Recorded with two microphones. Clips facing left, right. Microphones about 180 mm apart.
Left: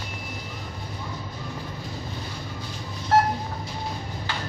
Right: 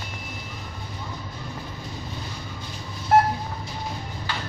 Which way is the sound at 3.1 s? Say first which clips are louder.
Right 2 dB; 20° right (ahead or behind).